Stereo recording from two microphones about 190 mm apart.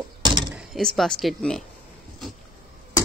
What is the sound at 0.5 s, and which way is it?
Speech, centre (ahead or behind).